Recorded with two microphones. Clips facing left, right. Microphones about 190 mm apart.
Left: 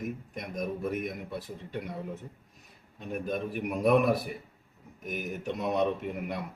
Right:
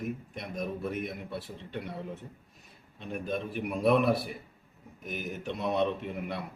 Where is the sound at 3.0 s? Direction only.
10° left (ahead or behind).